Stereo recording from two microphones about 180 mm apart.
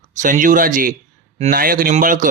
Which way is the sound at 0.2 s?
45° right (ahead or behind).